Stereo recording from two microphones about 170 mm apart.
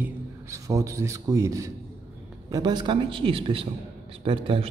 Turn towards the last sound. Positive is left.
turn(degrees=-30)  # may be behind; listen again after turning